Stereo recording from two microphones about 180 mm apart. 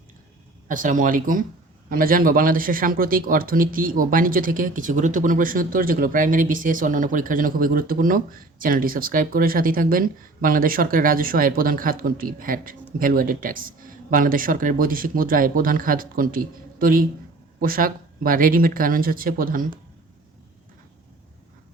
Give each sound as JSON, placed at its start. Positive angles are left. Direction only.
{"t": 0.7, "sound": "a man's voice", "side_deg": -45}